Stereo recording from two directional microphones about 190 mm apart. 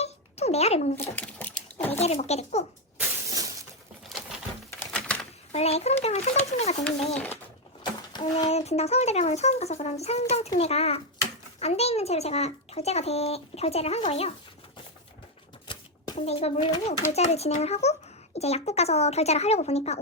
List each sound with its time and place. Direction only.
0.0 s a sound: 35° left (ahead or behind)
1.1 s sewing machine: 5° left (ahead or behind)
1.9 s a child's voice: 35° left (ahead or behind)
3.2 s shatter: 20° right (ahead or behind)
4.8 s typewriter: 5° left (ahead or behind)
5.5 s a child's voice: 35° left (ahead or behind)
7.1 s speech: 10° left (ahead or behind)
8.1 s speech: 20° left (ahead or behind)
8.4 s a child's voice: 35° left (ahead or behind)
15.6 s a sound: 25° left (ahead or behind)
17.2 s a child's voice: 35° left (ahead or behind)